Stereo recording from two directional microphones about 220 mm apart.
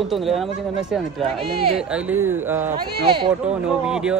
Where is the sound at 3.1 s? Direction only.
20° right (ahead or behind).